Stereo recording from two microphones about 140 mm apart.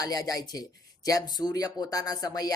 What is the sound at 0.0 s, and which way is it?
Speech, 25° left (ahead or behind).